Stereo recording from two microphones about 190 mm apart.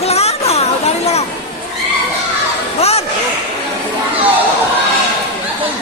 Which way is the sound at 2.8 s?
30° left (ahead or behind).